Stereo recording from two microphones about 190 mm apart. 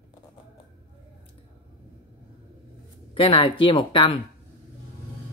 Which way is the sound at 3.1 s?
30° left (ahead or behind).